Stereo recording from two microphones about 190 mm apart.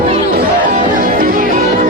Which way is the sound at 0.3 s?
45° right (ahead or behind).